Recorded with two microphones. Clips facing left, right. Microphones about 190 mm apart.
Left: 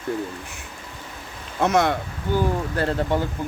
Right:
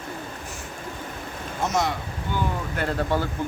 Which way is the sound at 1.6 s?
60° left (ahead or behind).